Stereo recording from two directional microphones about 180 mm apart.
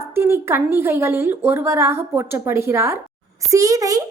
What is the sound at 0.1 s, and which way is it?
A woman's voice, 15° right (ahead or behind).